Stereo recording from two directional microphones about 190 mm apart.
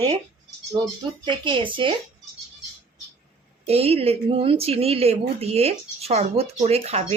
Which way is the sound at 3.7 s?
30° right (ahead or behind).